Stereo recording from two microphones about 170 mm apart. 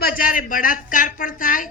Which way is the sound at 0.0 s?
60° left (ahead or behind).